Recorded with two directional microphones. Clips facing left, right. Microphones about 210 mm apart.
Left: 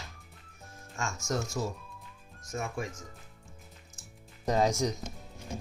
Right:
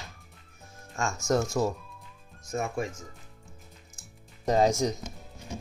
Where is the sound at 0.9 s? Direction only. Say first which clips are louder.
Right 7 dB; 50° right (ahead or behind).